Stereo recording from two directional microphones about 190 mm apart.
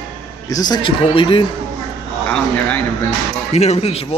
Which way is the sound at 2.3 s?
5° left (ahead or behind).